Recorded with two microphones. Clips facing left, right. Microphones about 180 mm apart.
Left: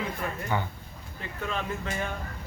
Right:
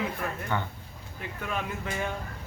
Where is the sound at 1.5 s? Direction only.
10° right (ahead or behind).